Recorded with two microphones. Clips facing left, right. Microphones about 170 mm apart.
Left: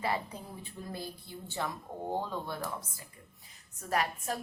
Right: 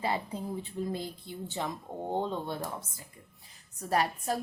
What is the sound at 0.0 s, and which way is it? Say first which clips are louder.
Speech: right 2 dB; 25° right (ahead or behind).